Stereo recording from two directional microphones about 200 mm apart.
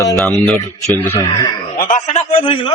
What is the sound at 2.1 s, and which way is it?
Speech, 30° left (ahead or behind).